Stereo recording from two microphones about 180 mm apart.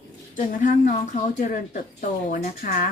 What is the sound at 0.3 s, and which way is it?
A woman's voice, 45° left (ahead or behind).